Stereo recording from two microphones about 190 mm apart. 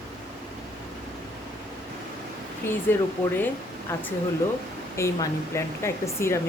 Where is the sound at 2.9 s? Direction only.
10° left (ahead or behind).